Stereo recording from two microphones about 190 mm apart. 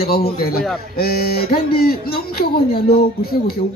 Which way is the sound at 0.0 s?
55° left (ahead or behind).